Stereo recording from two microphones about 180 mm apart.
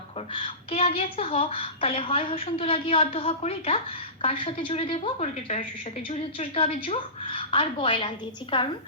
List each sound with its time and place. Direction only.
0.3 s a woman's voice: 30° left (ahead or behind)